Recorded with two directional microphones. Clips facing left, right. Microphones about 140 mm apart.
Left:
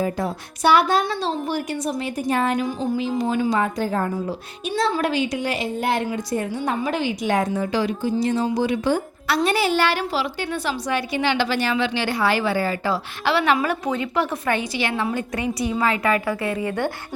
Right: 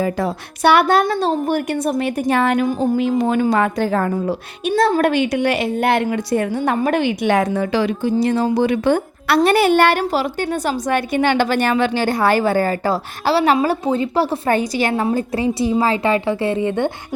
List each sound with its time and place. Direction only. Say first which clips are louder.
0.0 s a woman's voice: right 4 dB; 85° right
4.7 s a woman's voice: right 6 dB; 50° right (ahead or behind); by 6.6 s 70° right (ahead or behind)
6.7 s a woman's voice: right 6 dB; 60° right (ahead or behind); by 15.0 s 40° right (ahead or behind)
15.0 s a woman's voice: right 6 dB; 30° right (ahead or behind)